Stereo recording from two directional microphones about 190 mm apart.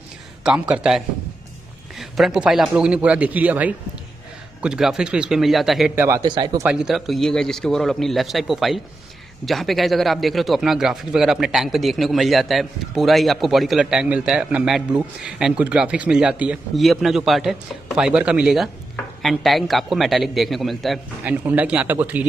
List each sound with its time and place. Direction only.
0.4 s speech: 5° right (ahead or behind)
5.9 s a man's voice: 15° right (ahead or behind)
6.7 s speech: 5° right (ahead or behind)